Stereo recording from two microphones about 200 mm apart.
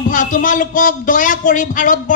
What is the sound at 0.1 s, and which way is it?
A man's voice, 40° left (ahead or behind).